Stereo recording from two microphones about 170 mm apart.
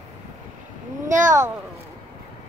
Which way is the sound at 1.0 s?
50° right (ahead or behind).